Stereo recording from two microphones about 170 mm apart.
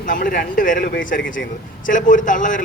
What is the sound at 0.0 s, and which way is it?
A man's voice, 50° left (ahead or behind).